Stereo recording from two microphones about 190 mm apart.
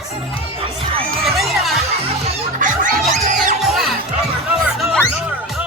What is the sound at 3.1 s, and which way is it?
Music, 45° right (ahead or behind).